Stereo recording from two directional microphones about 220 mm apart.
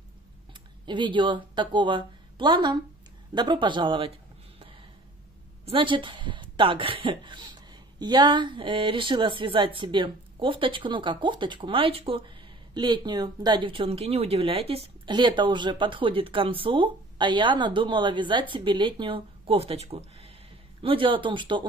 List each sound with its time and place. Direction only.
0.8 s speech: 20° right (ahead or behind)
5.7 s speech: 20° right (ahead or behind)